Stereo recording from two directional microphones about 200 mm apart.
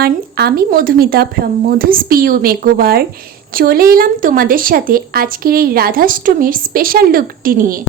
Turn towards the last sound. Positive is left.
turn(degrees=-45)  # may be behind; listen again after turning